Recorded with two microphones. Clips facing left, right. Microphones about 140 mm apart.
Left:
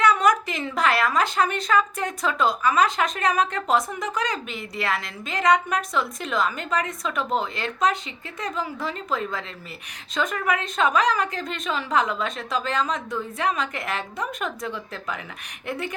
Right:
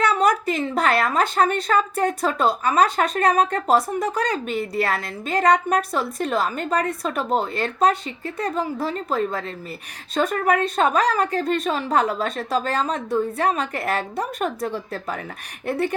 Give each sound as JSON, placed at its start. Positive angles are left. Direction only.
{"t": 0.0, "sound": "a woman's voice", "side_deg": -30}
{"t": 0.9, "sound": "a woman's voice", "side_deg": -45}